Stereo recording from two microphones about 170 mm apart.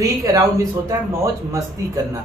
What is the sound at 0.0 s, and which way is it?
A woman's voice, 20° right (ahead or behind).